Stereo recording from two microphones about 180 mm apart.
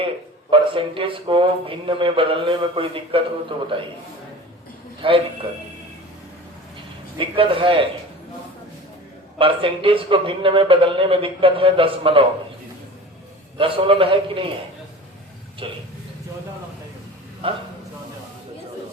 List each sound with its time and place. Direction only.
0.5 s a man's voice: 30° right (ahead or behind)
5.0 s a man's voice: 30° right (ahead or behind)
7.2 s a man's voice: 30° right (ahead or behind)
9.4 s a man's voice: 30° right (ahead or behind)
13.6 s a man's voice: 30° right (ahead or behind)
15.6 s a man's voice: 30° right (ahead or behind)
17.4 s a man's voice: 30° right (ahead or behind)